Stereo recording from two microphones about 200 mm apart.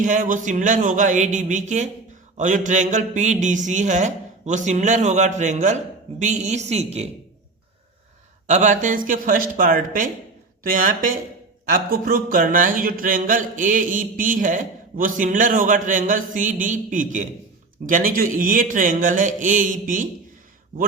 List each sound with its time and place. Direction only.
0.0 s speech: 40° right (ahead or behind)
8.4 s speech: 40° right (ahead or behind)